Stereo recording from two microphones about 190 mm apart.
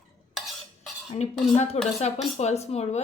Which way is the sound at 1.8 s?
30° left (ahead or behind).